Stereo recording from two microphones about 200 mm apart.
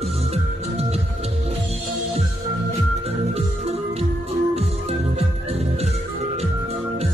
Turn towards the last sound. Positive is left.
turn(degrees=-30)  # may be behind; listen again after turning